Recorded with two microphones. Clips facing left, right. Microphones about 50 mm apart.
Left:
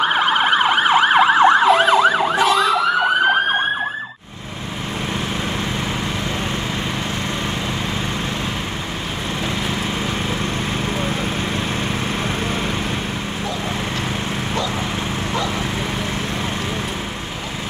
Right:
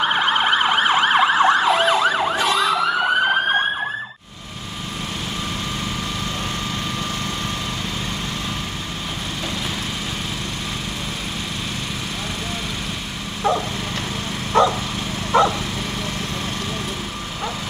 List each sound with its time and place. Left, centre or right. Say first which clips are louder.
0.0 s emergency vehicle: left 2 dB; centre
1.3 s emergency vehicle: left 3 dB; left
1.6 s emergency vehicle: left 4 dB; centre